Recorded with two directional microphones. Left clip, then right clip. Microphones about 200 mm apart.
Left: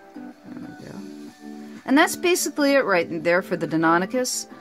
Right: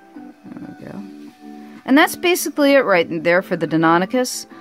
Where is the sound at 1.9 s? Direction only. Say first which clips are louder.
Right 4 dB; 20° right (ahead or behind).